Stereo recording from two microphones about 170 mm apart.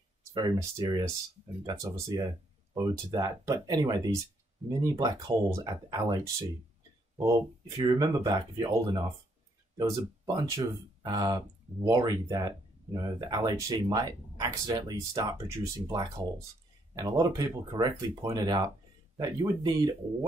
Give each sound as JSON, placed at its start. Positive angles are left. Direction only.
{"t": 0.6, "sound": "speech", "side_deg": -20}